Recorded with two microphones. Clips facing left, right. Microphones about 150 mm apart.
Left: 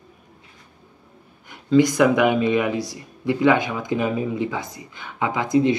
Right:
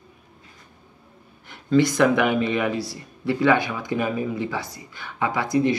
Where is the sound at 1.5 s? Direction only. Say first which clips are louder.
Left 2 dB; 15° left (ahead or behind).